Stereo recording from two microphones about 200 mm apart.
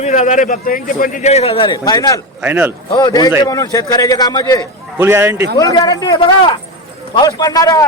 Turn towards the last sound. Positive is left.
turn(degrees=15)  # may be behind; listen again after turning